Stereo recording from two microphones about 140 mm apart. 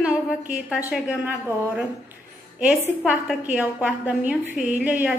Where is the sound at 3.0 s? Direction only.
10° right (ahead or behind).